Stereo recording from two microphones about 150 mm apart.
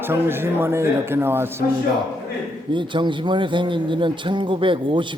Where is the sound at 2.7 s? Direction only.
30° right (ahead or behind).